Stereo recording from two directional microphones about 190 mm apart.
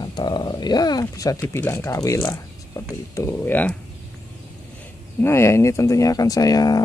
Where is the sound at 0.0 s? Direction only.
20° left (ahead or behind).